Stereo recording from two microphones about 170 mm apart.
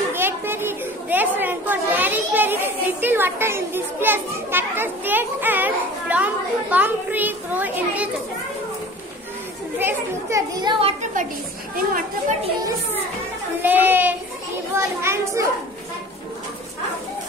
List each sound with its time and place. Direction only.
0.1 s a woman's voice: 15° right (ahead or behind)
9.8 s a woman's voice: 15° right (ahead or behind); by 11.1 s 35° right (ahead or behind)
11.7 s a woman's voice: 55° right (ahead or behind)
13.6 s a child's voice: 10° right (ahead or behind)